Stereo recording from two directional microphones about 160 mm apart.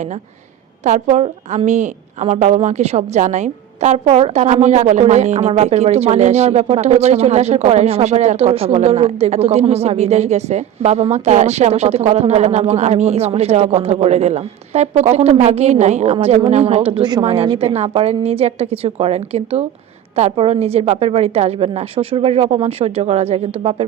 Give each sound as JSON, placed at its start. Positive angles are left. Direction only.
{"t": 0.9, "sound": "a woman's voice", "side_deg": -50}